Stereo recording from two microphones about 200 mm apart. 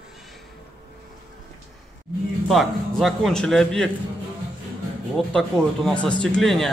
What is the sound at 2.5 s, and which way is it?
A man's voice, centre (ahead or behind).